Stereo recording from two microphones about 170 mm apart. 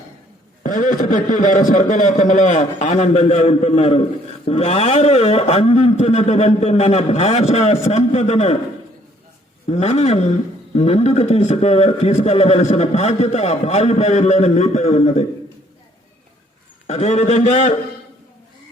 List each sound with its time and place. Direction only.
0.6 s a man's voice: 50° left (ahead or behind)
9.6 s a man's voice: 40° left (ahead or behind)
16.8 s a man's voice: 40° left (ahead or behind)